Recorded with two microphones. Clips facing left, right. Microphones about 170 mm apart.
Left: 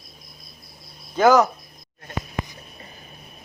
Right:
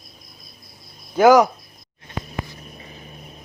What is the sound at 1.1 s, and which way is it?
Cricket, 10° right (ahead or behind).